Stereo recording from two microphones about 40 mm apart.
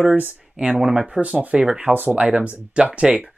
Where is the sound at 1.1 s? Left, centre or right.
Right.